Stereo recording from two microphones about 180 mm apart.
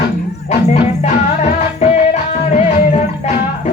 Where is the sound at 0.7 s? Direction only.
35° left (ahead or behind).